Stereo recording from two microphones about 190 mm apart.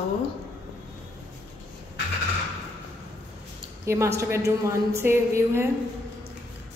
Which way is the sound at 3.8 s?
15° right (ahead or behind).